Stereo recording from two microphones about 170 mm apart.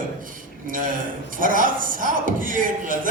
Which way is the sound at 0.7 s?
50° right (ahead or behind).